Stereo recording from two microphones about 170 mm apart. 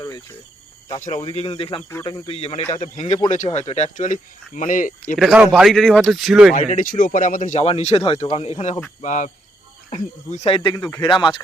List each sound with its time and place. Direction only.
1.1 s speech: 35° left (ahead or behind); by 5.1 s 50° left (ahead or behind)
5.1 s speech: 5° right (ahead or behind)
6.5 s speech: 50° left (ahead or behind)
9.0 s speech: 45° left (ahead or behind); by 10.8 s 30° left (ahead or behind)
10.8 s speech: 5° left (ahead or behind)
11.0 s speech: 25° left (ahead or behind)